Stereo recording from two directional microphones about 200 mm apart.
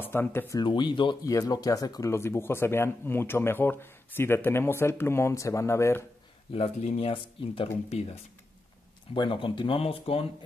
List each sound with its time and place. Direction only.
0.0 s speech: 10° left (ahead or behind)
6.5 s speech: 30° left (ahead or behind)
9.1 s speech: 25° left (ahead or behind)